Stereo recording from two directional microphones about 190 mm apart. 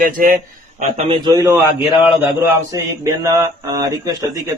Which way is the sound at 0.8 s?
35° right (ahead or behind).